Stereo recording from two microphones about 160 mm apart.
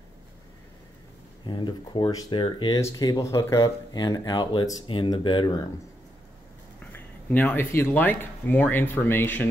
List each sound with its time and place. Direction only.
1.4 s speech: 30° left (ahead or behind)
6.9 s speech: 10° left (ahead or behind)